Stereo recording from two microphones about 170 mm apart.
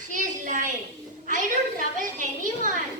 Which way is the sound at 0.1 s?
50° right (ahead or behind).